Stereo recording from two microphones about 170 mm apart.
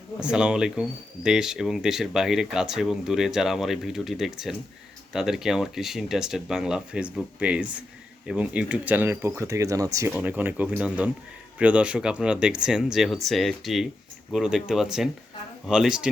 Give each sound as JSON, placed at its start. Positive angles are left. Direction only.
{"t": 0.2, "sound": "speech", "side_deg": -5}
{"t": 10.1, "sound": "speech", "side_deg": -10}